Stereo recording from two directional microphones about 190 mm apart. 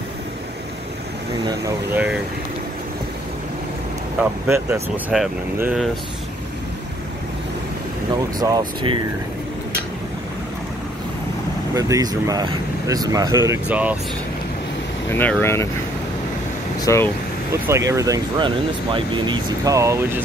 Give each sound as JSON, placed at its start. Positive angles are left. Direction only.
{"t": 1.4, "sound": "speech", "side_deg": -20}
{"t": 4.2, "sound": "speech", "side_deg": -10}
{"t": 8.4, "sound": "speech", "side_deg": -20}
{"t": 11.7, "sound": "speech", "side_deg": -20}
{"t": 13.5, "sound": "speech", "side_deg": -10}
{"t": 15.0, "sound": "speech", "side_deg": 10}
{"t": 16.8, "sound": "speech", "side_deg": 15}
{"t": 17.6, "sound": "speech", "side_deg": -15}